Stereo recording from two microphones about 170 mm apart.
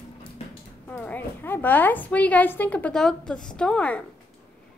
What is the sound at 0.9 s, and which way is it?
A woman's voice, 10° left (ahead or behind).